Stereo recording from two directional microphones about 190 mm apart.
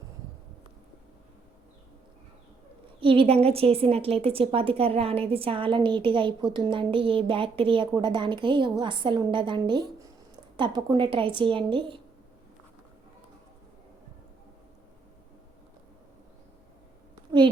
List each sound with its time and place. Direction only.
3.0 s a woman's voice: 30° right (ahead or behind)